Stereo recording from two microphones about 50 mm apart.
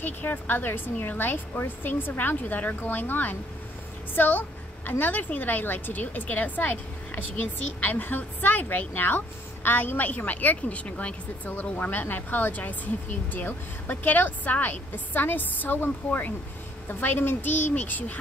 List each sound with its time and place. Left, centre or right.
0.0 s a woman's voice: left